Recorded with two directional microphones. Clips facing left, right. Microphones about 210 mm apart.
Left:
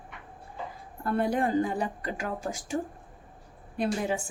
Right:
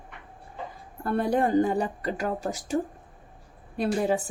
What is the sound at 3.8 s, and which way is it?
Speech, 35° right (ahead or behind).